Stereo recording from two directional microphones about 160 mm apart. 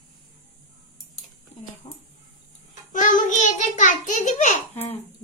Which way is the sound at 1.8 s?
25° left (ahead or behind).